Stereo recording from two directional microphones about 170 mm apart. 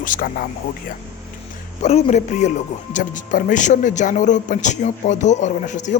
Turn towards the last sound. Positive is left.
turn(degrees=45)  # may be behind; listen again after turning